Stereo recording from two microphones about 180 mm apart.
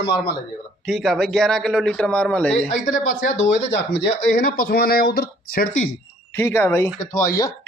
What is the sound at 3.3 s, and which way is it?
Speech, 90° left.